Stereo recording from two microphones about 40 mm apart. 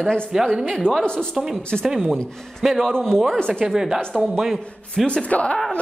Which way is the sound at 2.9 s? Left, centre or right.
Centre.